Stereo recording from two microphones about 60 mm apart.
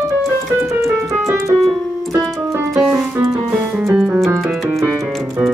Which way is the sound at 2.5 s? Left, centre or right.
Right.